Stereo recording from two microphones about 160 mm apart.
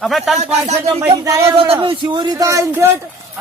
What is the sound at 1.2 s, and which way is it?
Speech, 20° right (ahead or behind).